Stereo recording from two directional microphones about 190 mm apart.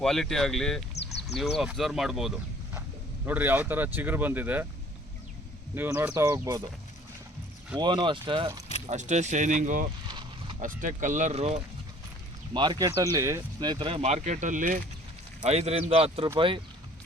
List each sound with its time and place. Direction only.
0.0 s speech: centre (ahead or behind)
5.7 s speech: 10° right (ahead or behind)
7.8 s speech: 25° right (ahead or behind)
8.9 s speech: 40° right (ahead or behind)
10.1 s a sound: 25° right (ahead or behind)
10.6 s speech: 45° right (ahead or behind)
12.5 s speech: 20° right (ahead or behind)